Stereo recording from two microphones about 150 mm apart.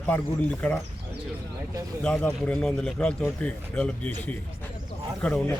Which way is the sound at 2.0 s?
5° left (ahead or behind).